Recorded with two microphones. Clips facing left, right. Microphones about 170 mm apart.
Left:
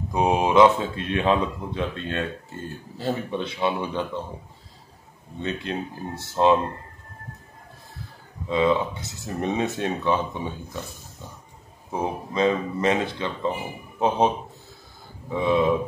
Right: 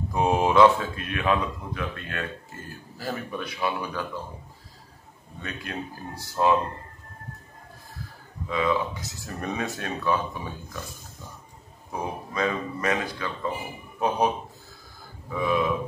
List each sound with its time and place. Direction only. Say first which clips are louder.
0.1 s speech: left 2 dB; 20° left (ahead or behind)
5.4 s speech: left 6 dB; 25° left (ahead or behind)
8.5 s speech: left 4 dB; 25° left (ahead or behind)
11.9 s speech: left 4 dB; 25° left (ahead or behind)